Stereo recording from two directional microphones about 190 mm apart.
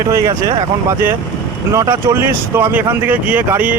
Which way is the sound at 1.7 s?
15° right (ahead or behind).